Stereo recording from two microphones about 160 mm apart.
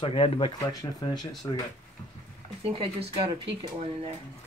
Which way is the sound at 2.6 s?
35° right (ahead or behind).